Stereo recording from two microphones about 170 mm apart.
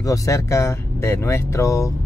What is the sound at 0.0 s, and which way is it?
Speech, 20° left (ahead or behind).